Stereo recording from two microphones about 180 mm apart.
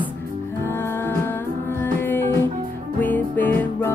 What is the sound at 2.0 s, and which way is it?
Music, 10° left (ahead or behind).